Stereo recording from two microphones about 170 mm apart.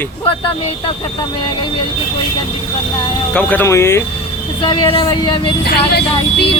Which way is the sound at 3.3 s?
10° left (ahead or behind).